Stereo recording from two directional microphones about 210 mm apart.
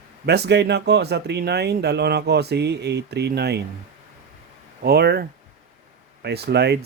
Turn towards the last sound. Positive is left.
turn(degrees=-50)  # may be behind; listen again after turning